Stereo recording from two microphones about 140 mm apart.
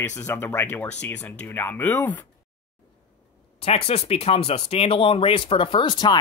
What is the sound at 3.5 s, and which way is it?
Speech, 45° left (ahead or behind).